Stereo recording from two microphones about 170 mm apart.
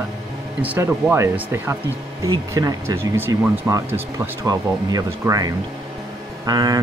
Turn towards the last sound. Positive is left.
turn(degrees=-20)  # may be behind; listen again after turning